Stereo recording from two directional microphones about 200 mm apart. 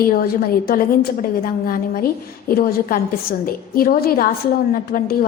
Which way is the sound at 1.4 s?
45° left (ahead or behind).